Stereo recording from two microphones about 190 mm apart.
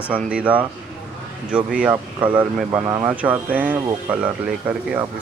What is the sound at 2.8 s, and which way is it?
Speech, 20° right (ahead or behind).